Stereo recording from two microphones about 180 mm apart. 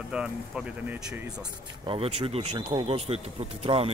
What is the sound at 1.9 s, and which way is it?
Speech, 35° right (ahead or behind).